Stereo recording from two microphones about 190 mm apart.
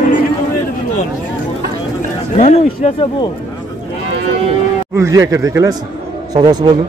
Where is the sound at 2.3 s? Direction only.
35° left (ahead or behind).